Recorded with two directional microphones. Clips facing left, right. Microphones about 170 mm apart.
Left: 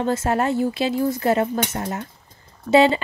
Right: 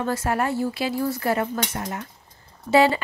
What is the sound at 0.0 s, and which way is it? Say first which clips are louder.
Speech: left 3 dB; 25° left (ahead or behind).